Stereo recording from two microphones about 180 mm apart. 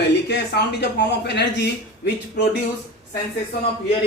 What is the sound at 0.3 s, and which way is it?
Speech, 70° left (ahead or behind).